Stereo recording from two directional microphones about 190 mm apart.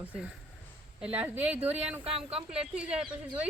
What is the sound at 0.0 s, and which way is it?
Speech, 5° right (ahead or behind).